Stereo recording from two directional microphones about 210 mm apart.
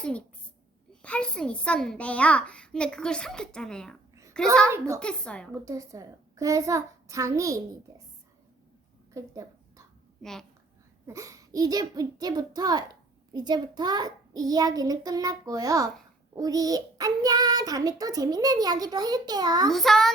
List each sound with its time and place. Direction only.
0.0 s a child's voice: 5° left (ahead or behind)
4.1 s a sound: 15° right (ahead or behind)
4.9 s a child's voice: 5° left (ahead or behind)
5.6 s a child's voice: 15° right (ahead or behind)
9.1 s a sound: 15° right (ahead or behind)
11.0 s a child's voice: 15° right (ahead or behind)
19.7 s a child's voice: centre (ahead or behind)